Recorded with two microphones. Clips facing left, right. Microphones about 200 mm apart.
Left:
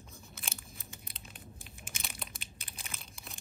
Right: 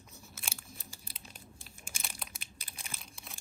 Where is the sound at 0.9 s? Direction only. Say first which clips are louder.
Left 1 dB; 30° right (ahead or behind).